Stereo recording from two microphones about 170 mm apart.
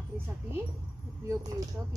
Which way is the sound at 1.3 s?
20° right (ahead or behind).